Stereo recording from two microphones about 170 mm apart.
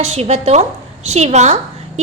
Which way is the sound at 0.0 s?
40° right (ahead or behind).